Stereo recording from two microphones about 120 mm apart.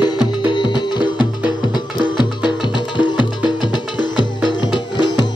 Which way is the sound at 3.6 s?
40° left (ahead or behind).